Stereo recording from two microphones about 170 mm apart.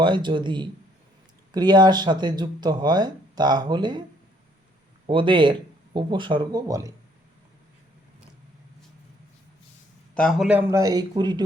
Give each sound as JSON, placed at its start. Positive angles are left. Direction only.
{"t": 0.0, "sound": "speech", "side_deg": -25}
{"t": 5.0, "sound": "speech", "side_deg": -30}
{"t": 10.2, "sound": "a man's voice", "side_deg": 0}
{"t": 10.7, "sound": "speech", "side_deg": -20}